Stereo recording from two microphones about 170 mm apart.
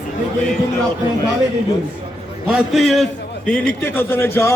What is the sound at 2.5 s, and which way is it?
Speech, centre (ahead or behind).